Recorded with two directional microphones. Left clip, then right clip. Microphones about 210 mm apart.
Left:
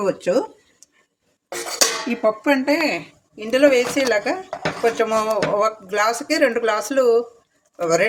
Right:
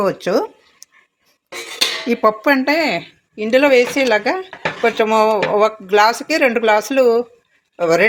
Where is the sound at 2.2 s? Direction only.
20° right (ahead or behind).